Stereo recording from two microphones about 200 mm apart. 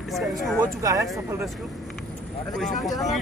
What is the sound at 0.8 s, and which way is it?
Speech, 15° right (ahead or behind).